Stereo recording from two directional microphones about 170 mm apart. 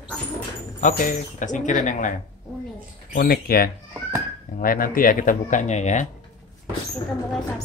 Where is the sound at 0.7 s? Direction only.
50° left (ahead or behind).